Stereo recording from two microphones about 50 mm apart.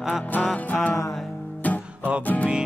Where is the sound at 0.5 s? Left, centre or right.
Left.